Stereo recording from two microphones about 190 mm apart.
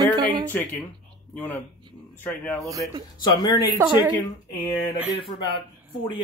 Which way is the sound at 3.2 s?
20° left (ahead or behind).